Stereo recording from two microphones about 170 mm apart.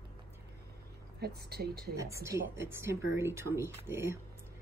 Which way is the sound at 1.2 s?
70° right (ahead or behind).